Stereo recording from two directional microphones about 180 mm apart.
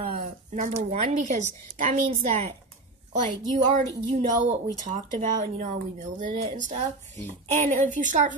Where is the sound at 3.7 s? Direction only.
45° right (ahead or behind).